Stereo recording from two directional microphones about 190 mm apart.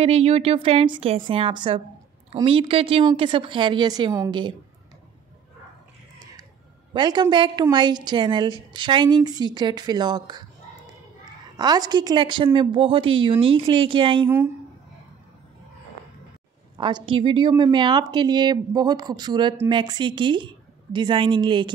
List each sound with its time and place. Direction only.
0.0 s a woman's voice: 30° right (ahead or behind)
6.9 s a woman's voice: 20° right (ahead or behind)
11.5 s a woman's voice: 20° right (ahead or behind)
16.7 s a woman's voice: 25° right (ahead or behind)